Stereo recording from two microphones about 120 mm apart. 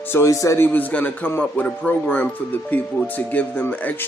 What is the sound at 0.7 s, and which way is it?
Speech, 15° left (ahead or behind).